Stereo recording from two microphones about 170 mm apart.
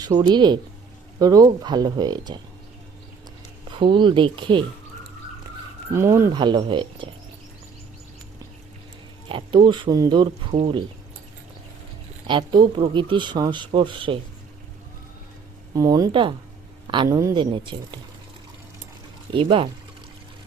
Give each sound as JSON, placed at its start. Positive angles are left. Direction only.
{"t": 0.0, "sound": "speech", "side_deg": -25}
{"t": 3.7, "sound": "speech", "side_deg": -30}
{"t": 5.9, "sound": "speech", "side_deg": -15}
{"t": 6.3, "sound": "speech", "side_deg": -25}
{"t": 9.3, "sound": "speech", "side_deg": -30}
{"t": 10.5, "sound": "speech", "side_deg": -40}
{"t": 12.3, "sound": "speech", "side_deg": -25}
{"t": 15.7, "sound": "speech", "side_deg": -20}
{"t": 19.3, "sound": "speech", "side_deg": -30}